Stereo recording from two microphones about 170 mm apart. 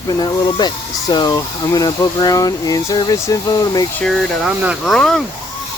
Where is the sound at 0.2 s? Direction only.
25° left (ahead or behind).